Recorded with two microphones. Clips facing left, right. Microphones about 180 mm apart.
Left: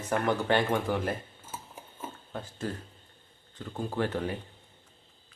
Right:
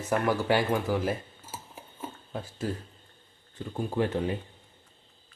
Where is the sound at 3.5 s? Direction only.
10° right (ahead or behind).